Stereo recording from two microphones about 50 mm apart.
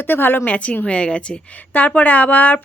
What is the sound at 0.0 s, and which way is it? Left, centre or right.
Speech, left.